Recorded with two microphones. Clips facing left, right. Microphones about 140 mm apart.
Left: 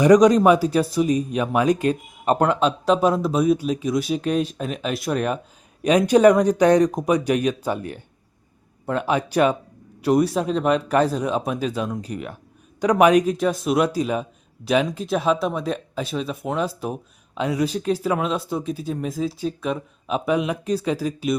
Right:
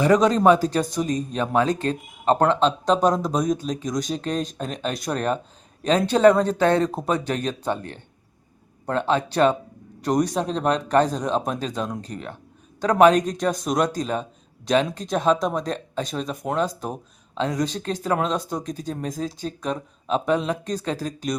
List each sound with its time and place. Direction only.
0.0 s speech: 15° left (ahead or behind)